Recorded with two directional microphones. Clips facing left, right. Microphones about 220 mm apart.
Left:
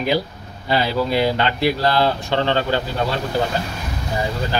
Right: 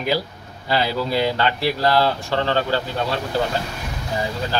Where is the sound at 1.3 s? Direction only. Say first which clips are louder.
Left 2 dB; 20° left (ahead or behind).